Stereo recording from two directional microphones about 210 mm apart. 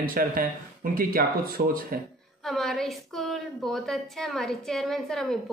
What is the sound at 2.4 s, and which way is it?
A woman's voice, centre (ahead or behind).